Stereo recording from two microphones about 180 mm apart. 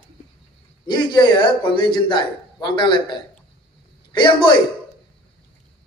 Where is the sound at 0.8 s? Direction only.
25° left (ahead or behind).